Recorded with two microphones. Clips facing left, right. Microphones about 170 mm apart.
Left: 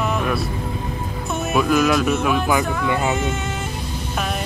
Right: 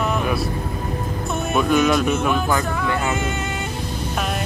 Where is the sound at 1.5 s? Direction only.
Centre (ahead or behind).